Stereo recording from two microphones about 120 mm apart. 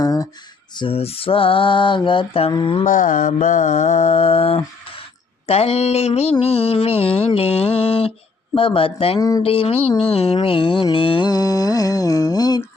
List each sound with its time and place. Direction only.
0.0 s a sound: 30° left (ahead or behind)
0.8 s mantra: 50° left (ahead or behind)
2.8 s mantra: 90° left; by 4.6 s 55° left (ahead or behind)
5.5 s speech: 55° left (ahead or behind)
6.4 s mantra: 55° left (ahead or behind)
9.4 s speech: 50° left (ahead or behind)
10.0 s mantra: 55° left (ahead or behind)
11.3 s mantra: 30° left (ahead or behind)